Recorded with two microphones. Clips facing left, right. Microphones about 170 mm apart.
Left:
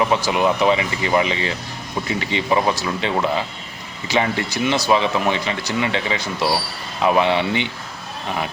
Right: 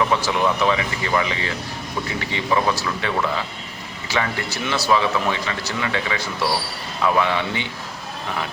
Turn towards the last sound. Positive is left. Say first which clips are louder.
# left 3 dB
turn(degrees=20)  # may be behind; listen again after turning